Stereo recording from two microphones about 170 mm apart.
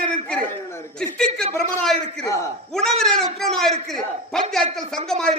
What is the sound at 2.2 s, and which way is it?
Speech, 20° left (ahead or behind).